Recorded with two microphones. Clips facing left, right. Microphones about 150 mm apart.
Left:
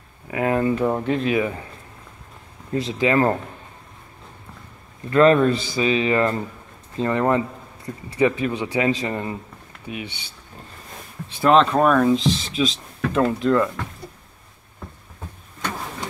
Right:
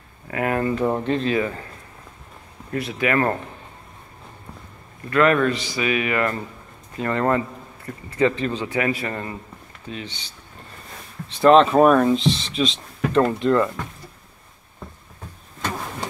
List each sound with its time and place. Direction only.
0.3 s a man's voice: 20° left (ahead or behind)
2.7 s speech: 25° left (ahead or behind)
5.1 s a man's voice: 30° left (ahead or behind); by 10.3 s 10° left (ahead or behind)
11.4 s speech: centre (ahead or behind)